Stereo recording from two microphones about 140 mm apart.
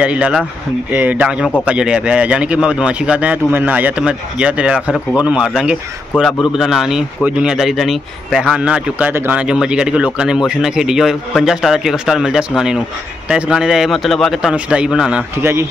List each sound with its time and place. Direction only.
0.0 s a man's voice: 10° right (ahead or behind)
15.3 s a man's voice: 15° right (ahead or behind)